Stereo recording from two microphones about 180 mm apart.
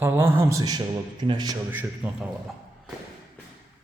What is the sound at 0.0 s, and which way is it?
A man's voice, 10° right (ahead or behind).